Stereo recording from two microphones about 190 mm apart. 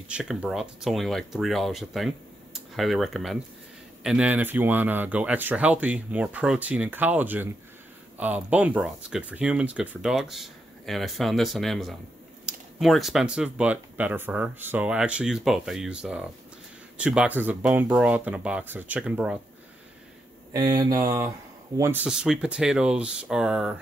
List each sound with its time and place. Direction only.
0.1 s speech: 5° right (ahead or behind)
20.5 s speech: 20° right (ahead or behind); by 23.7 s 5° right (ahead or behind)